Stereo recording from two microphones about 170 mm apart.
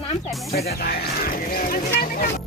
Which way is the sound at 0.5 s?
65° left (ahead or behind).